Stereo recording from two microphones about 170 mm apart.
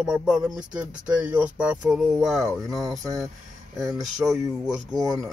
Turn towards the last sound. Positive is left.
turn(degrees=-20)  # may be behind; listen again after turning